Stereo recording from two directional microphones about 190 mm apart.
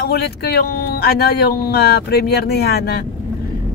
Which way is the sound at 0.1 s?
60° left (ahead or behind).